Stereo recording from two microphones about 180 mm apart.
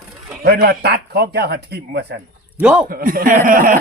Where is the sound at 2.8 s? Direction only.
55° right (ahead or behind).